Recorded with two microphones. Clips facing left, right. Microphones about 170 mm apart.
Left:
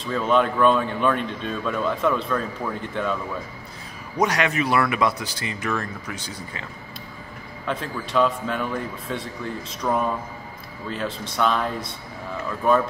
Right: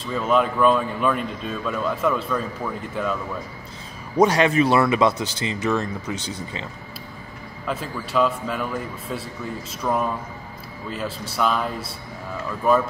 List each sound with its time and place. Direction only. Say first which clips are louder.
0.0 s speech: even; 5° right (ahead or behind)
4.2 s speech: right 5 dB; 30° right (ahead or behind)
7.6 s speech: even; 5° right (ahead or behind)